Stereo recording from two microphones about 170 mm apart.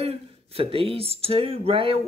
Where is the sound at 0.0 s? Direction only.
35° right (ahead or behind).